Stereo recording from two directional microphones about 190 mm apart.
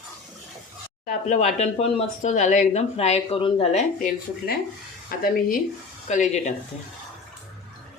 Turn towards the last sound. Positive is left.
turn(degrees=40)  # may be behind; listen again after turning